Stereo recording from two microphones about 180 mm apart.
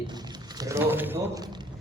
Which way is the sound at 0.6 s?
15° right (ahead or behind).